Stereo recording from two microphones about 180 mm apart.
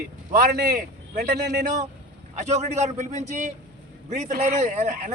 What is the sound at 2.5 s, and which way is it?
A man's voice, 40° right (ahead or behind).